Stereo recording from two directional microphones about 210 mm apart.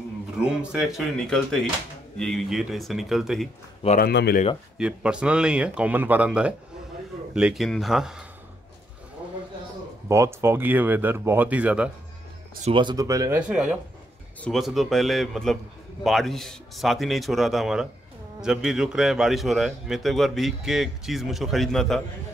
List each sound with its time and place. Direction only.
0.4 s a man's voice: 5° right (ahead or behind)
4.0 s speech: 50° left (ahead or behind)
4.7 s a man's voice: 5° right (ahead or behind)
10.0 s speech: 15° right (ahead or behind)
12.6 s speech: 25° right (ahead or behind)
13.4 s a man's voice: 5° right (ahead or behind)